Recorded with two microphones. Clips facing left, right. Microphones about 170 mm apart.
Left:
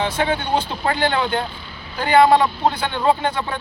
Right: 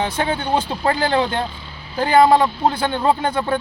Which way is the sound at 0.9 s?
35° right (ahead or behind).